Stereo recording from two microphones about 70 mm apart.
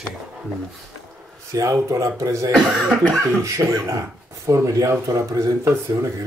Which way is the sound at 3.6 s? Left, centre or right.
Right.